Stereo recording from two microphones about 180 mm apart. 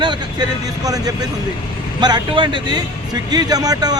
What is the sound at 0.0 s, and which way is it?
Speech, 25° right (ahead or behind).